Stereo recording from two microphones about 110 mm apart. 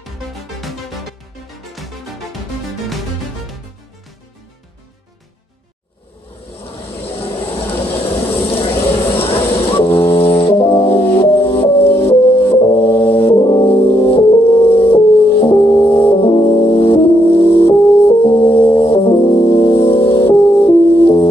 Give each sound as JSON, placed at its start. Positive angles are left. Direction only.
{"t": 0.0, "sound": "music", "side_deg": 0}
{"t": 6.9, "sound": "a sound", "side_deg": 60}
{"t": 7.8, "sound": "vehicle", "side_deg": 55}
{"t": 10.5, "sound": "music", "side_deg": 55}
{"t": 12.4, "sound": "music", "side_deg": 25}
{"t": 13.1, "sound": "brass instrument", "side_deg": 60}
{"t": 13.4, "sound": "music", "side_deg": 40}
{"t": 13.7, "sound": "music", "side_deg": 60}
{"t": 15.7, "sound": "music", "side_deg": 25}
{"t": 16.3, "sound": "music", "side_deg": 45}